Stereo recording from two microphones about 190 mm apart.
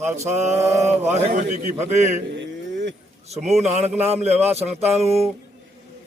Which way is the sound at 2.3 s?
65° right (ahead or behind).